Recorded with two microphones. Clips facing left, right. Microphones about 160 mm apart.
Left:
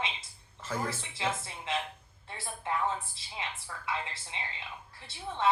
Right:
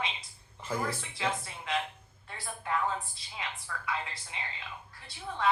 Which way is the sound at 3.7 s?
25° left (ahead or behind).